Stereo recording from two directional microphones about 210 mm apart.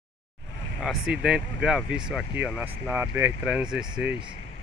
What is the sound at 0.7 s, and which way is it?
Speech, centre (ahead or behind).